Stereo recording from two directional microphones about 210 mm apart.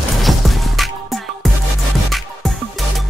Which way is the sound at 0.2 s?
Centre (ahead or behind).